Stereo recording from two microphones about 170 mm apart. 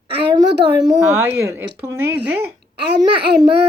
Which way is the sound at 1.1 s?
15° right (ahead or behind).